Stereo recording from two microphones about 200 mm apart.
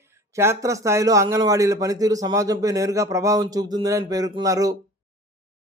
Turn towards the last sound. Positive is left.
turn(degrees=-15)  # may be behind; listen again after turning